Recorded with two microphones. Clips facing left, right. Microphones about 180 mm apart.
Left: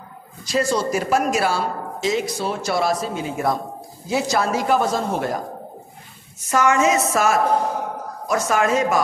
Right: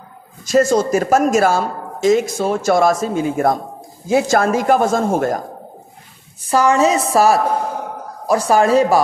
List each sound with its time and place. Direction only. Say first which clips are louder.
0.5 s speech: right 7 dB; 45° right (ahead or behind)
6.5 s a woman's voice: right 4 dB; 35° right (ahead or behind)